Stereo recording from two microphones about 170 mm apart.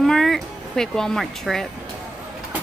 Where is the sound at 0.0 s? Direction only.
Centre (ahead or behind).